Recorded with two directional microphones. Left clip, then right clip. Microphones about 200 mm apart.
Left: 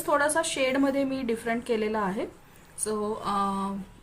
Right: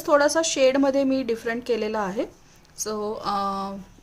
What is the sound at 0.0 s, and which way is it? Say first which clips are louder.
A woman's voice: right 5 dB; 50° right (ahead or behind).